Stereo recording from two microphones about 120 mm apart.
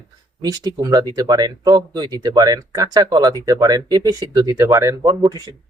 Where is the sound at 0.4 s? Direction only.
35° right (ahead or behind).